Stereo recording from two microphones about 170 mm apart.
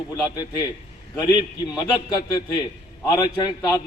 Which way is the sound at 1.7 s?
20° left (ahead or behind).